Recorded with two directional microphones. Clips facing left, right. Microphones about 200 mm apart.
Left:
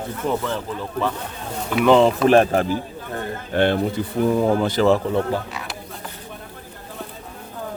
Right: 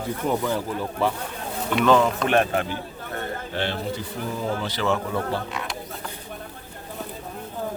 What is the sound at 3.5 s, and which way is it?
Speech, 55° left (ahead or behind).